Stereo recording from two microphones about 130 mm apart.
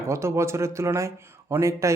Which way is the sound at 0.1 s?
20° right (ahead or behind).